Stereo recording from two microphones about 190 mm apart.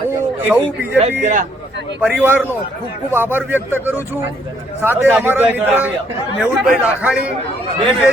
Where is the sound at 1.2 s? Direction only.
40° right (ahead or behind).